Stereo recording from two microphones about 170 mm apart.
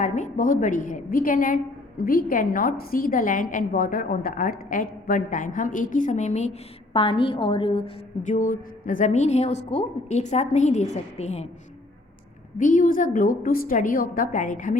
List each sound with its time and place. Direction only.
0.0 s a woman's voice: 45° left (ahead or behind)
8.2 s a woman's voice: 50° left (ahead or behind)
12.5 s a woman's voice: 50° left (ahead or behind)